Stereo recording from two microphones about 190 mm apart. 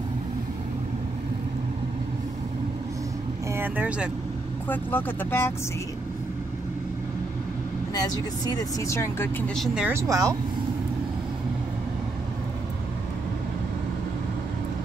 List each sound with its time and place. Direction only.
3.5 s speech: 10° right (ahead or behind)
4.6 s speech: 10° left (ahead or behind)
7.9 s speech: 20° left (ahead or behind)
9.6 s speech: 5° right (ahead or behind)